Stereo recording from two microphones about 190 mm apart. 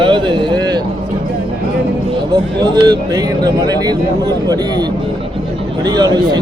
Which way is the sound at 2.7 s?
20° right (ahead or behind).